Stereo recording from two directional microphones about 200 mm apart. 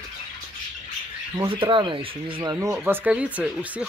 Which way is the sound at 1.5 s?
25° right (ahead or behind).